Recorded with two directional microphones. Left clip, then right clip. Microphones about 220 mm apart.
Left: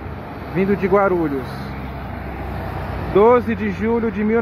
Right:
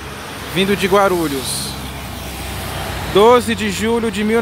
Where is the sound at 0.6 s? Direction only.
15° right (ahead or behind).